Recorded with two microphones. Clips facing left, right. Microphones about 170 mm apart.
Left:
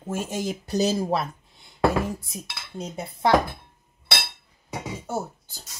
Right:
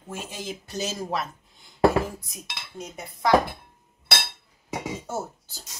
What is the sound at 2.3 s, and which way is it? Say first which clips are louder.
Dishes: left 3 dB; 30° left (ahead or behind).